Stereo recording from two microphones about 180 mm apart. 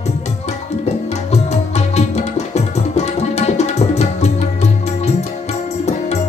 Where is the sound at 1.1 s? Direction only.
35° left (ahead or behind).